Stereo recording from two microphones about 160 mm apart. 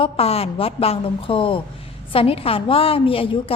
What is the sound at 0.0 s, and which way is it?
Speech, 40° left (ahead or behind).